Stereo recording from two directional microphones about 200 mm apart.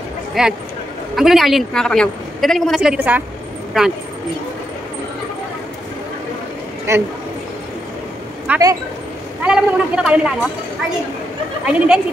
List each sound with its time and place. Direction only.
0.3 s a woman's voice: 5° right (ahead or behind)
6.9 s a man's voice: 15° right (ahead or behind)
8.5 s speech: 15° right (ahead or behind)
9.4 s a woman's voice: 5° right (ahead or behind)
11.6 s a woman's voice: 5° right (ahead or behind)